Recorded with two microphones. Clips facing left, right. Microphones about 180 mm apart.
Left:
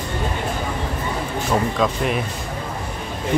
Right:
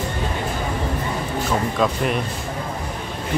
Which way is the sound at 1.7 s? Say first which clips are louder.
Even; centre (ahead or behind).